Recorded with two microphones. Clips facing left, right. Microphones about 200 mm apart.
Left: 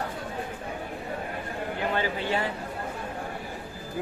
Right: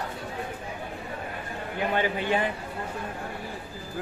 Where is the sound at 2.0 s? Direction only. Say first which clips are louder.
Right 2 dB; 20° right (ahead or behind).